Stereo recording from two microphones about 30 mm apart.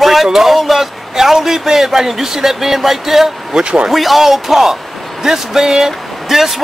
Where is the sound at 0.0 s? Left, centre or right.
Centre.